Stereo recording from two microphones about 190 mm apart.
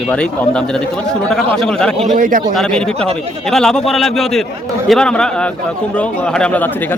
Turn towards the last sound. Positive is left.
turn(degrees=10)  # may be behind; listen again after turning